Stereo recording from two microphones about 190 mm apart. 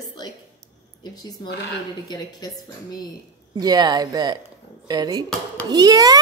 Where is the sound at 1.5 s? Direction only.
65° left (ahead or behind).